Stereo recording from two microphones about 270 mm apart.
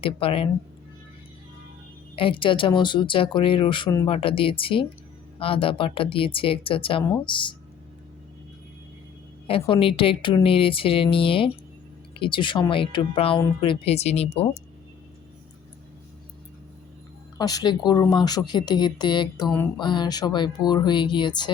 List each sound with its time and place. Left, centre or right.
0.0 s speech: centre
2.1 s speech: centre
9.5 s speech: centre
17.3 s speech: centre